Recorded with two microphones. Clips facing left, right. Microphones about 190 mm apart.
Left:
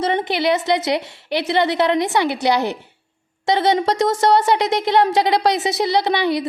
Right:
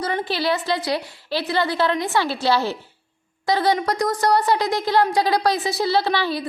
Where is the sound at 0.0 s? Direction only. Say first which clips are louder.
Left 4 dB; 20° left (ahead or behind).